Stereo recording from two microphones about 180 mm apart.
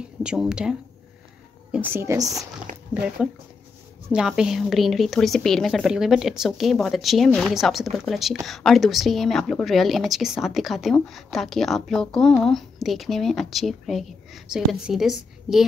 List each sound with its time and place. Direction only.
0.2 s a woman's voice: 5° right (ahead or behind)
2.9 s a woman's voice: 10° right (ahead or behind)